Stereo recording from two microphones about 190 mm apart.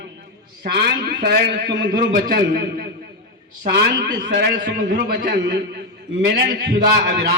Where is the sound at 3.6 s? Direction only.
60° right (ahead or behind).